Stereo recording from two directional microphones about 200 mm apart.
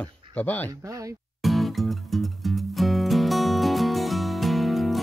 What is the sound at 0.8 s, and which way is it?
Speech, 15° right (ahead or behind).